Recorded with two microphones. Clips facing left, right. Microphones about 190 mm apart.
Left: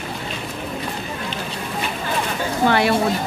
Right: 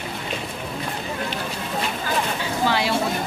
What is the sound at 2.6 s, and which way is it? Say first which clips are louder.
Speech: left 5 dB; 55° left (ahead or behind).